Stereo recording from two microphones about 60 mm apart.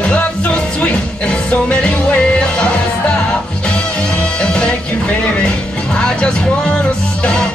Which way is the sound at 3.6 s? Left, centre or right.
Centre.